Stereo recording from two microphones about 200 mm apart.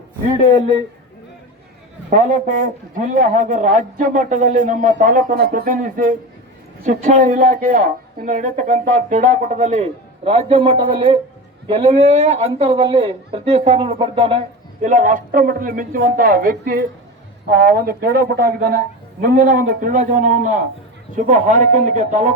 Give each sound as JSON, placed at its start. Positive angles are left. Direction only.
{"t": 2.0, "sound": "a man's voice", "side_deg": -40}
{"t": 14.8, "sound": "speech", "side_deg": -40}